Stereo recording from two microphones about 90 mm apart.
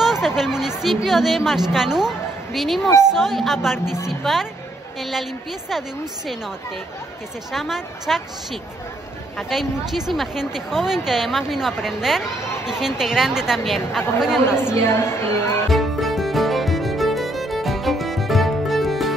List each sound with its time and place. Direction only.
0.0 s a sound: 5° right (ahead or behind)
0.4 s a woman's voice: 5° right (ahead or behind)
5.7 s speech: 5° right (ahead or behind)
7.5 s speech: centre (ahead or behind)
9.4 s speech: centre (ahead or behind)
14.6 s speech: 30° left (ahead or behind)
15.7 s music: centre (ahead or behind)